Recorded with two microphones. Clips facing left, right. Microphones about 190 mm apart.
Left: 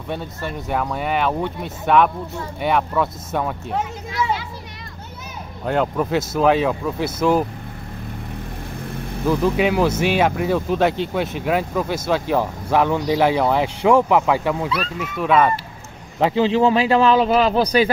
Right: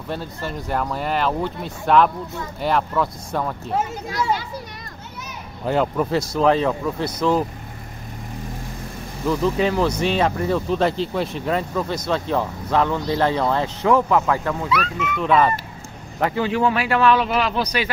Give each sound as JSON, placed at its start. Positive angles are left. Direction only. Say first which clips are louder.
{"t": 0.1, "sound": "speech", "louder": "left 1 dB", "side_deg": 0}
{"t": 5.7, "sound": "speech", "louder": "even", "side_deg": 0}
{"t": 9.4, "sound": "speech", "louder": "left 1 dB", "side_deg": 10}
{"t": 16.2, "sound": "a man's voice", "louder": "left 4 dB", "side_deg": 20}